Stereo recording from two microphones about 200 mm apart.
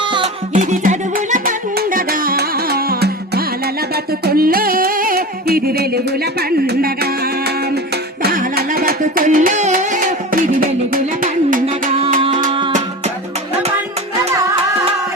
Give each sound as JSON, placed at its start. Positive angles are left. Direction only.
{"t": 0.5, "sound": "music", "side_deg": -40}
{"t": 11.6, "sound": "music", "side_deg": -30}